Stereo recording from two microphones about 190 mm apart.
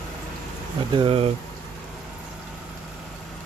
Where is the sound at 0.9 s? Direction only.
30° right (ahead or behind).